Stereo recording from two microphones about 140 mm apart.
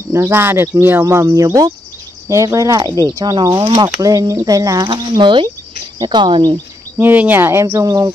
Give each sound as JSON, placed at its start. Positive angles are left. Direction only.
{"t": 0.1, "sound": "speech", "side_deg": -15}
{"t": 7.0, "sound": "speech", "side_deg": -15}